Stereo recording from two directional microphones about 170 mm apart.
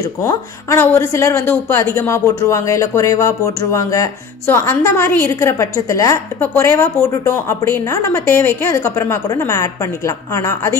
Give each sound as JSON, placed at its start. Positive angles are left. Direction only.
{"t": 0.0, "sound": "speech", "side_deg": 20}